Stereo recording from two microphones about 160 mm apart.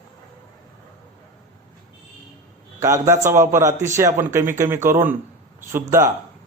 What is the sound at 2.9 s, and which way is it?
Speech, 20° right (ahead or behind).